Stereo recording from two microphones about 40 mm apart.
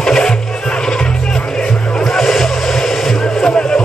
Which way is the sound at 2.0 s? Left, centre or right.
Centre.